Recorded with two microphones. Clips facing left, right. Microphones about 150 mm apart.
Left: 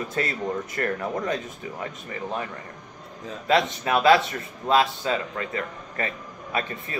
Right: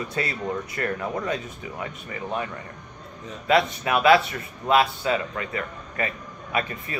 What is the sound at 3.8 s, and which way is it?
A man's voice, 35° left (ahead or behind).